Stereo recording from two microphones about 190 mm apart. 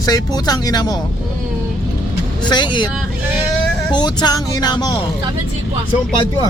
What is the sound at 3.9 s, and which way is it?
Speech, 20° left (ahead or behind).